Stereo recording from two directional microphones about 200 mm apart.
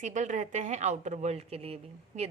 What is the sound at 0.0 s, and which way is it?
A woman's voice, 35° right (ahead or behind).